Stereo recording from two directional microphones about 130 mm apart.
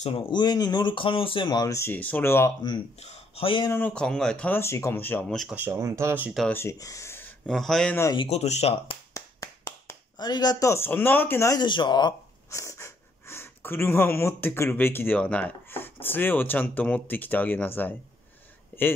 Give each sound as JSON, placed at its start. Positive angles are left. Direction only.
{"t": 0.1, "sound": "speech", "side_deg": 35}
{"t": 3.0, "sound": "speech", "side_deg": 50}
{"t": 3.8, "sound": "speech", "side_deg": 5}
{"t": 5.5, "sound": "speech", "side_deg": -15}
{"t": 6.5, "sound": "speech", "side_deg": 20}
{"t": 7.4, "sound": "speech", "side_deg": 5}
{"t": 8.3, "sound": "speech", "side_deg": 55}
{"t": 9.1, "sound": "a sound", "side_deg": 25}
{"t": 11.6, "sound": "speech", "side_deg": 35}
{"t": 18.7, "sound": "a sound", "side_deg": 15}